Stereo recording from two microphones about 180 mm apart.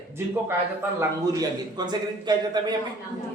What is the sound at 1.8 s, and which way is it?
A man's voice, 25° right (ahead or behind).